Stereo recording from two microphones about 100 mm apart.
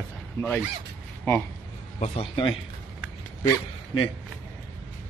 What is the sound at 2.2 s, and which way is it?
Speech, 55° left (ahead or behind).